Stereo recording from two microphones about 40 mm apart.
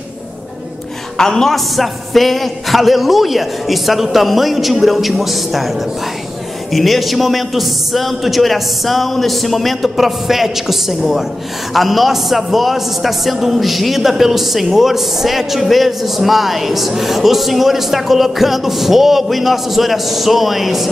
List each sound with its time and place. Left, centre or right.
1.1 s a woman's voice: centre